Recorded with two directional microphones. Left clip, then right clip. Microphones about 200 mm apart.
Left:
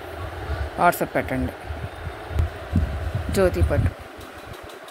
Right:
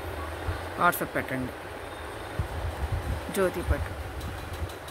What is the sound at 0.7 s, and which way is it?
Speech, 25° left (ahead or behind).